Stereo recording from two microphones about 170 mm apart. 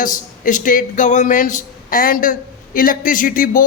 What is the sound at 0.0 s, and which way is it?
Speech, 50° left (ahead or behind).